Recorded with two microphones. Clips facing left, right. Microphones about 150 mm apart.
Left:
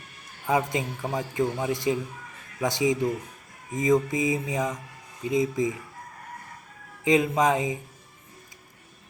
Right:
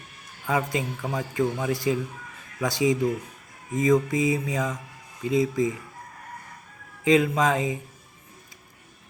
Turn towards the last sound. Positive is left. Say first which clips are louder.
# even
turn(degrees=20)  # may be behind; listen again after turning